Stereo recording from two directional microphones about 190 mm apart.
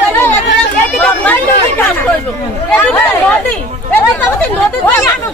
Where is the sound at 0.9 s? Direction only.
10° left (ahead or behind).